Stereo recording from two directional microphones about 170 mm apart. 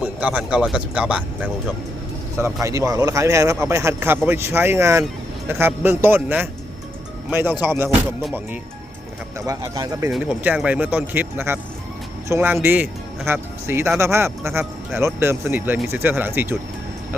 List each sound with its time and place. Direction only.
0.0 s speech: 10° right (ahead or behind)
2.4 s speech: 20° right (ahead or behind)
9.5 s speech: 20° right (ahead or behind)
10.1 s speech: 5° right (ahead or behind)